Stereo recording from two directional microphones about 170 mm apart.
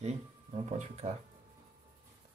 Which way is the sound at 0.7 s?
40° right (ahead or behind).